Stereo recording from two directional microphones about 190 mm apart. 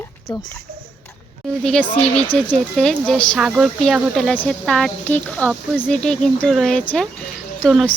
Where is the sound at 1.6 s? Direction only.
5° left (ahead or behind).